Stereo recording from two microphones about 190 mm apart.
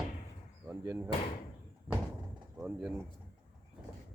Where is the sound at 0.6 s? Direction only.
10° right (ahead or behind).